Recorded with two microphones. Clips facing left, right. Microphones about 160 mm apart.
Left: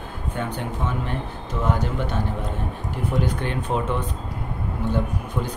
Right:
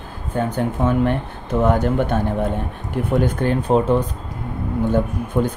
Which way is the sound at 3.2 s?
45° right (ahead or behind).